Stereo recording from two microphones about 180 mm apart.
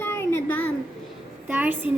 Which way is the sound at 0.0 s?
15° left (ahead or behind).